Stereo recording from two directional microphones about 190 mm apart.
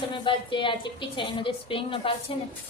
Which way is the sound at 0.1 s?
25° left (ahead or behind).